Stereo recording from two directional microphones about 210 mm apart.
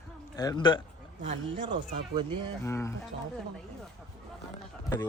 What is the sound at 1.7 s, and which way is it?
Speech, 20° right (ahead or behind).